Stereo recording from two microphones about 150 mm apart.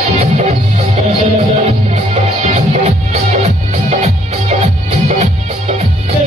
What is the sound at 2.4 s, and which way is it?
Music, 45° right (ahead or behind).